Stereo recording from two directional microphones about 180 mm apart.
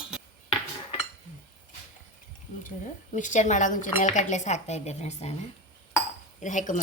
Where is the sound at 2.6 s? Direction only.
45° left (ahead or behind).